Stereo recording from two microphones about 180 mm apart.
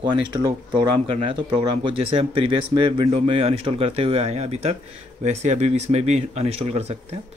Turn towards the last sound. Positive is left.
turn(degrees=-35)  # may be behind; listen again after turning